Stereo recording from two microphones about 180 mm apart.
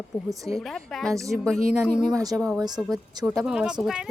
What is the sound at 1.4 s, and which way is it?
Speech, 5° left (ahead or behind).